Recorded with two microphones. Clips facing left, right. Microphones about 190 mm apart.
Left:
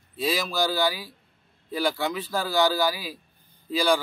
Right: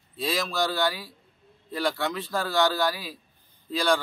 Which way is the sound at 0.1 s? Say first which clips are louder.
Left 2 dB; centre (ahead or behind).